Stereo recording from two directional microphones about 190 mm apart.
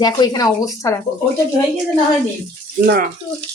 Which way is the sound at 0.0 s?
20° left (ahead or behind).